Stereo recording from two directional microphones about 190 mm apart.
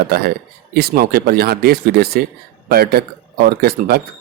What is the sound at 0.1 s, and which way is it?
Speech, 55° right (ahead or behind).